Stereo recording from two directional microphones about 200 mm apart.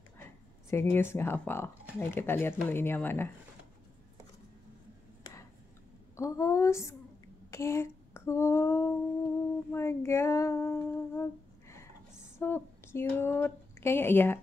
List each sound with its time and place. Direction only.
0.2 s a sound: 10° left (ahead or behind)
0.9 s speech: 10° left (ahead or behind)
5.2 s a sound: 15° left (ahead or behind)
6.1 s speech: 15° left (ahead or behind)
7.5 s female singing: 15° left (ahead or behind)
9.7 s humming: 15° left (ahead or behind)
12.4 s speech: 10° left (ahead or behind)